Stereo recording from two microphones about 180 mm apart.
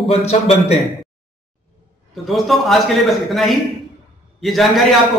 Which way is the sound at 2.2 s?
Centre (ahead or behind).